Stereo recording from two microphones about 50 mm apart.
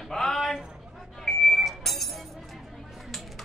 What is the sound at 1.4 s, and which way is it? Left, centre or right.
Vehicle, centre.